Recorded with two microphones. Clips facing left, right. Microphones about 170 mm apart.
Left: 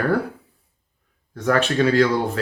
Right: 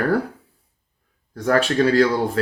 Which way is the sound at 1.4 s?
35° right (ahead or behind).